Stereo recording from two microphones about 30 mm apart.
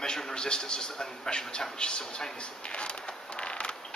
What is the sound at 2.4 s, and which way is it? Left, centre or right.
Creak, left.